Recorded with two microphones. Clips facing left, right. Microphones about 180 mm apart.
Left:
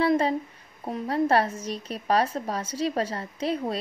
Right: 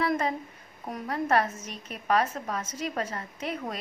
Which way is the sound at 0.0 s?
30° left (ahead or behind).